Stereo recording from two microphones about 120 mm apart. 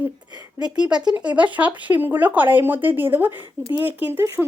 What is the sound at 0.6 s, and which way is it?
A woman's voice, 5° right (ahead or behind).